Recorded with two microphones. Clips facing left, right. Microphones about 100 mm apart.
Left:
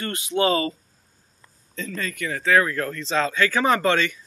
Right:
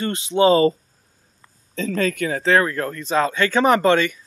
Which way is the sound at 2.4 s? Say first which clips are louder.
Right 1 dB; 30° right (ahead or behind).